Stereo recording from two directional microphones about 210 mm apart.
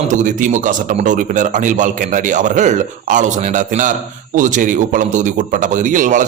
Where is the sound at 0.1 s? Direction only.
35° right (ahead or behind).